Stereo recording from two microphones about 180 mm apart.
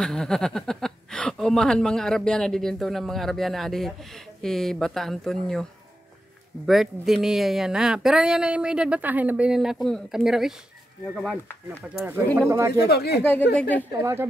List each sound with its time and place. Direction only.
0.0 s speech: 5° left (ahead or behind)
11.9 s speech: 5° right (ahead or behind)
12.8 s speech: 60° left (ahead or behind)
13.2 s speech: 10° left (ahead or behind)